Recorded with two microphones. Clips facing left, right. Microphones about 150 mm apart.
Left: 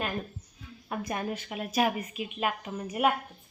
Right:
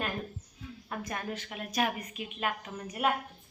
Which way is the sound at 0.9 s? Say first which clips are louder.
Left 4 dB; 15° left (ahead or behind).